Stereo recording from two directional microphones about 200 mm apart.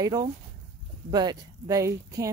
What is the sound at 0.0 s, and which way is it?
Speech, 20° right (ahead or behind).